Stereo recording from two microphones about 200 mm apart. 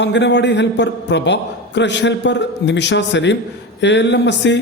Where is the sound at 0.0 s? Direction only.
60° left (ahead or behind).